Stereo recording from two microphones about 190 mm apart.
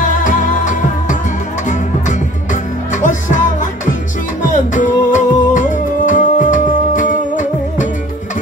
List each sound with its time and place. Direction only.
0.0 s music: 45° left (ahead or behind)
2.9 s music: 40° left (ahead or behind)